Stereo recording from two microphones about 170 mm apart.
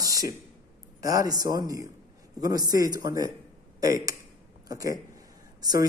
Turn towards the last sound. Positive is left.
turn(degrees=-20)  # may be behind; listen again after turning